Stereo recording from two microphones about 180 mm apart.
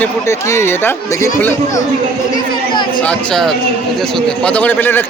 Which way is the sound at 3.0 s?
5° left (ahead or behind).